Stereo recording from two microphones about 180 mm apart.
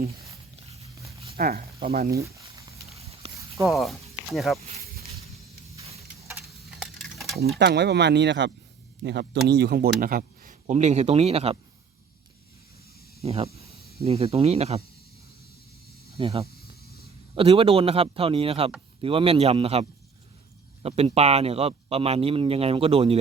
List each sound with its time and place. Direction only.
1.4 s speech: 55° right (ahead or behind)
3.1 s a sound: 35° right (ahead or behind)
3.7 s speech: centre (ahead or behind)
6.2 s tick-tock: 5° right (ahead or behind)
7.0 s a sound: centre (ahead or behind)
7.6 s speech: 65° right (ahead or behind); by 11.5 s 35° right (ahead or behind)
13.2 s speech: 35° right (ahead or behind)
16.1 s speech: 30° right (ahead or behind)